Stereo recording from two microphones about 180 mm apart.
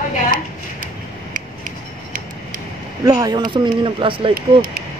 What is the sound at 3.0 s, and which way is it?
Speech, 20° right (ahead or behind).